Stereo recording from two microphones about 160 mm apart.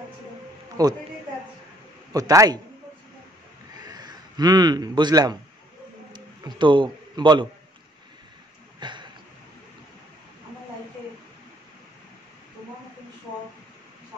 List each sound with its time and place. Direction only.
0.8 s a man's voice: 20° right (ahead or behind)
2.1 s a man's voice: 20° right (ahead or behind)
3.8 s a man's voice: 25° right (ahead or behind)
8.7 s a sound: 30° right (ahead or behind)